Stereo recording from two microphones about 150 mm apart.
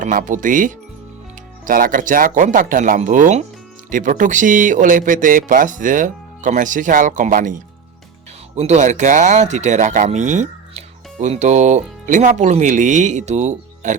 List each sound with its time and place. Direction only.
0.0 s speech: 60° right (ahead or behind)
8.5 s speech: 50° right (ahead or behind)